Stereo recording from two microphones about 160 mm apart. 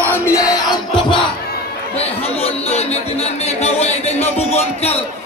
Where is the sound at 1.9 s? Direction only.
40° left (ahead or behind).